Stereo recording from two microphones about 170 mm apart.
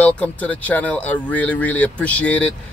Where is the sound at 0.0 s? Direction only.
10° left (ahead or behind).